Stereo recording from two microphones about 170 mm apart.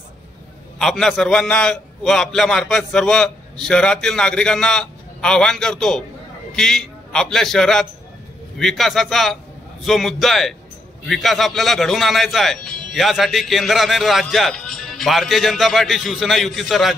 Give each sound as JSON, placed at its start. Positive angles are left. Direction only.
{"t": 0.7, "sound": "a man's voice", "side_deg": 0}